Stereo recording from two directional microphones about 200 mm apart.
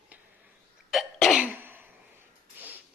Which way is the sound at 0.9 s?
Centre (ahead or behind).